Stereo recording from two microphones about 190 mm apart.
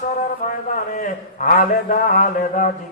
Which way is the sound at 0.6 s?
40° left (ahead or behind).